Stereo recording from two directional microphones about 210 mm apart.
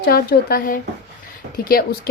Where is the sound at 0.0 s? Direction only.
45° left (ahead or behind).